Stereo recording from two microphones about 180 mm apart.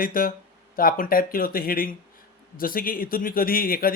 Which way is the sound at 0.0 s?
50° left (ahead or behind).